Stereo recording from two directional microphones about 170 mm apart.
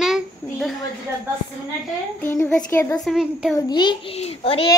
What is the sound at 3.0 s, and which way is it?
Speech, 5° right (ahead or behind).